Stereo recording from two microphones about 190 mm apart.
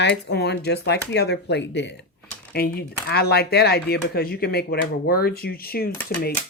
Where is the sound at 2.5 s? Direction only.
50° left (ahead or behind).